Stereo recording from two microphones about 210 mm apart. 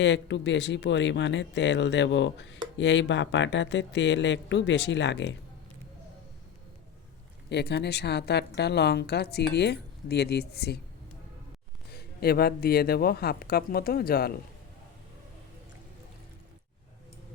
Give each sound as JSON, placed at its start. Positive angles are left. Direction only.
{"t": 0.0, "sound": "speech", "side_deg": 55}
{"t": 7.5, "sound": "a woman's voice", "side_deg": 50}
{"t": 11.9, "sound": "a woman's voice", "side_deg": 50}